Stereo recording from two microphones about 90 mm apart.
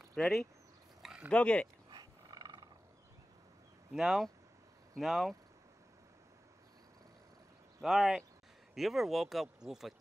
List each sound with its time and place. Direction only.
0.1 s speech: 5° left (ahead or behind)
1.3 s speech: 15° left (ahead or behind)
1.9 s roar: 45° right (ahead or behind)
3.9 s speech: 5° right (ahead or behind)
7.8 s speech: 5° right (ahead or behind)